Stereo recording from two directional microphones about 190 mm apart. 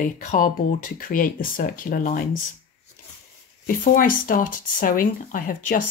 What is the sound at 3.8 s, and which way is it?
Speech, 45° left (ahead or behind).